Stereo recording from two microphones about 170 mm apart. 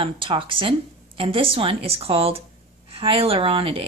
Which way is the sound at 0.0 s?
30° right (ahead or behind).